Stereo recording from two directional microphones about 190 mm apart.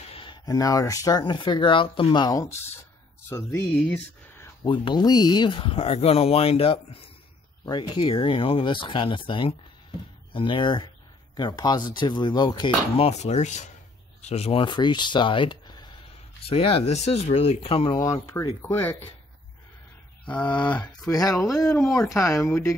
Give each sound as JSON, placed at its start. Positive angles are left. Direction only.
{"t": 0.1, "sound": "speech", "side_deg": 25}
{"t": 4.6, "sound": "speech", "side_deg": 25}
{"t": 17.9, "sound": "speech", "side_deg": 15}
{"t": 20.2, "sound": "speech", "side_deg": 10}
{"t": 21.1, "sound": "speech", "side_deg": 20}